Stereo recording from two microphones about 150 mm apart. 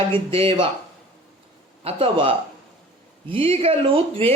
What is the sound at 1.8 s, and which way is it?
Speech, 40° right (ahead or behind).